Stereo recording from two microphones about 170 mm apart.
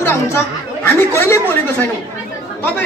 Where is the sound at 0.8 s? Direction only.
15° left (ahead or behind).